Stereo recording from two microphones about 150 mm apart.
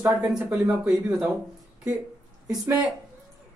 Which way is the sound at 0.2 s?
5° right (ahead or behind).